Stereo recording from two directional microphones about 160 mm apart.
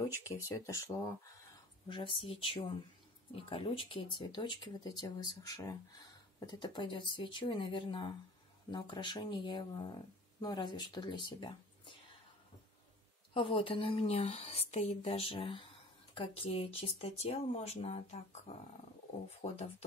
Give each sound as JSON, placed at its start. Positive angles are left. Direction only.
{"t": 0.2, "sound": "speech", "side_deg": 20}
{"t": 1.9, "sound": "speech", "side_deg": 30}
{"t": 13.3, "sound": "speech", "side_deg": 35}